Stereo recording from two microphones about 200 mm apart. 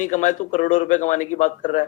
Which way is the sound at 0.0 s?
40° left (ahead or behind).